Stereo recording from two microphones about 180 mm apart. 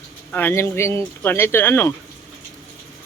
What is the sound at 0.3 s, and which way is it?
Speech, 10° left (ahead or behind).